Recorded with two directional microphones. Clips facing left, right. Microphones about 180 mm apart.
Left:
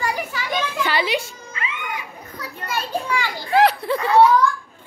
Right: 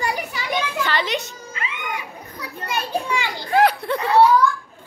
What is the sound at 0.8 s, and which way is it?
Speech, 10° left (ahead or behind).